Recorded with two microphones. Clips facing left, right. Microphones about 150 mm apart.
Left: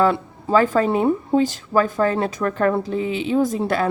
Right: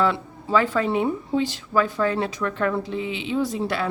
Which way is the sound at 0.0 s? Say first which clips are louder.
Left 4 dB; 45° left (ahead or behind).